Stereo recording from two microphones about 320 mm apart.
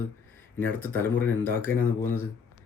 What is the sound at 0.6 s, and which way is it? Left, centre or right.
Speech, centre.